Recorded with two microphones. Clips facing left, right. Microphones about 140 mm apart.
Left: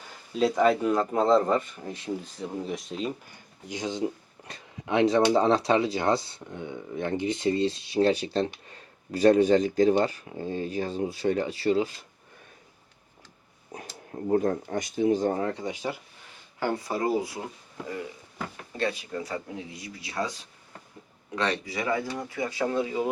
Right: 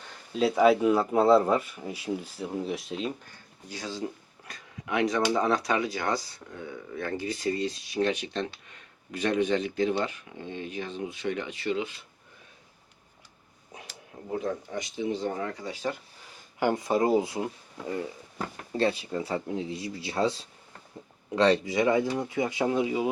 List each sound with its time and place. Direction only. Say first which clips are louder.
0.3 s speech: right 1 dB; 5° right (ahead or behind)
3.7 s speech: left 5 dB; 20° left (ahead or behind); by 12.0 s 40° left (ahead or behind)
13.7 s speech: left 7 dB; 45° left (ahead or behind)
15.6 s speech: left 1 dB; 15° left (ahead or behind)
16.6 s speech: right 4 dB; 20° right (ahead or behind)
18.8 s speech: right 3 dB; 30° right (ahead or behind)